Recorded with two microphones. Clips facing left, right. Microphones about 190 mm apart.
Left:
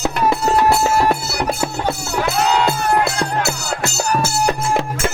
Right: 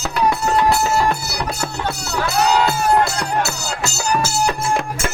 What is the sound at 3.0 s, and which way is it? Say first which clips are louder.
Music: left 1 dB; 55° left (ahead or behind).